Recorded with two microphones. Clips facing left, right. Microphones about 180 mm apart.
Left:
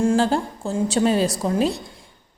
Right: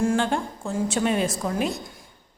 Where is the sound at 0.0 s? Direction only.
30° left (ahead or behind).